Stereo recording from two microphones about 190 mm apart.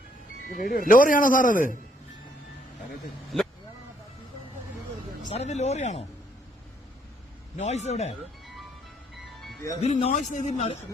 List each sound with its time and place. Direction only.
0.5 s a man's voice: 50° left (ahead or behind)
5.3 s a man's voice: 35° left (ahead or behind)
7.5 s a man's voice: 35° left (ahead or behind)
9.8 s a man's voice: 35° left (ahead or behind)